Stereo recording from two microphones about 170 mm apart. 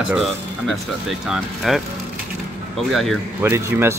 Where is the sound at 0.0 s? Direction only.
Centre (ahead or behind).